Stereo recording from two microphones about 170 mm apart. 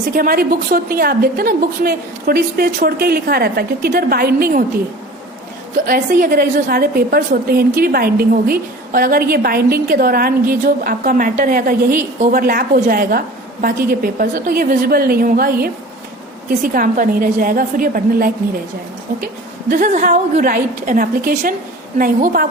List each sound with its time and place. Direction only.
0.1 s a woman's voice: 60° right (ahead or behind)
5.8 s a woman's voice: 55° right (ahead or behind)
19.7 s a woman's voice: 50° right (ahead or behind)